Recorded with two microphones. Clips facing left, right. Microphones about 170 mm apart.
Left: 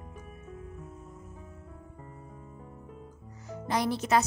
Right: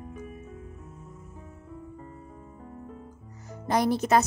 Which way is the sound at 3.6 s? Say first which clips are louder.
Right 5 dB; 45° right (ahead or behind).